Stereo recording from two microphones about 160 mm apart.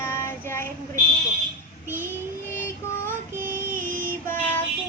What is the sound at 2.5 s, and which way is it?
Child singing, 15° left (ahead or behind).